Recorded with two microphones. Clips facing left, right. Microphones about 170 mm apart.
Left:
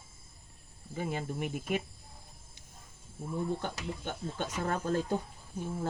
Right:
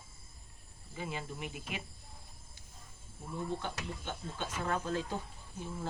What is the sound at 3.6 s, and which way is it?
Speech, 50° left (ahead or behind).